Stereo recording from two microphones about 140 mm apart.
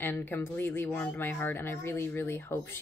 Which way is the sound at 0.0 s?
15° left (ahead or behind).